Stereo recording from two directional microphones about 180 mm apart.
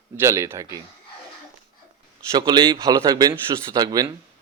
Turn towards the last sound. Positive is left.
turn(degrees=-20)  # may be behind; listen again after turning